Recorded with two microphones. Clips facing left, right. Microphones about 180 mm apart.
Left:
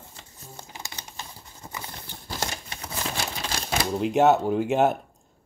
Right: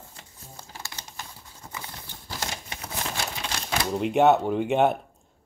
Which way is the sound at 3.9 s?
Centre (ahead or behind).